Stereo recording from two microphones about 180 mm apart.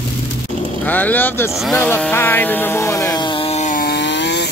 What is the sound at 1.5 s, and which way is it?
Speech, centre (ahead or behind).